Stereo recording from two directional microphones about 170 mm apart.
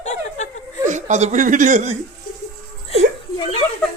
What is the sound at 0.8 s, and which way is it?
Speech, 45° right (ahead or behind).